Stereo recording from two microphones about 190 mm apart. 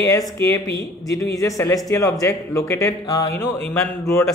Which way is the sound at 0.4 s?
15° left (ahead or behind).